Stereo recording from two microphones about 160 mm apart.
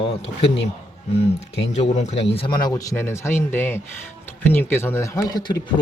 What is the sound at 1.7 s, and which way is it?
Speech, 45° left (ahead or behind).